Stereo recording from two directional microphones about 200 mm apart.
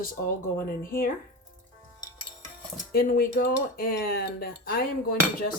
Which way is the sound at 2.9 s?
50° left (ahead or behind).